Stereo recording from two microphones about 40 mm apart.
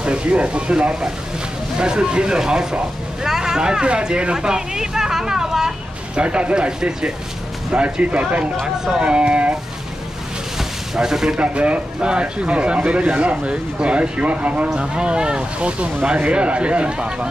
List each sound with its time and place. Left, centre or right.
0.0 s speech: right; by 5.8 s centre
6.1 s speech: right
10.6 s a sound: centre
11.3 s speech: right
14.7 s speech: right